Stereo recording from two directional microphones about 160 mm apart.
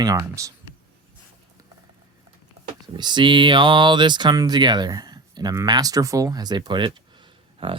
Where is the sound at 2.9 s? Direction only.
30° right (ahead or behind).